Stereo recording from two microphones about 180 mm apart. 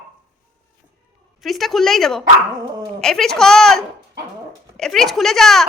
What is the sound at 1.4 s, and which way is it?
A woman's voice, centre (ahead or behind).